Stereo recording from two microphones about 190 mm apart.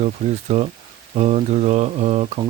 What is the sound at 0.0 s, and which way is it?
Speech, 35° right (ahead or behind).